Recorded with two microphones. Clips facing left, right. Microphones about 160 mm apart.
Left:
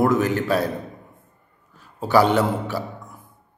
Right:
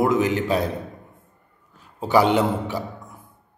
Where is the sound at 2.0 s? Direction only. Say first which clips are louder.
Left 1 dB; 15° right (ahead or behind).